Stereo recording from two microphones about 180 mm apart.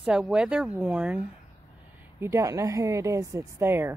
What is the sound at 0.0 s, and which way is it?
Speech, 5° right (ahead or behind).